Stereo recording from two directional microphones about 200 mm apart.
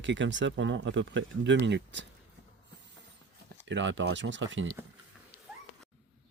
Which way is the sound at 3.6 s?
65° right (ahead or behind).